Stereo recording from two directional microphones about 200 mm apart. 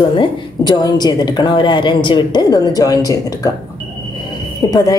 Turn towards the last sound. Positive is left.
turn(degrees=20)  # may be behind; listen again after turning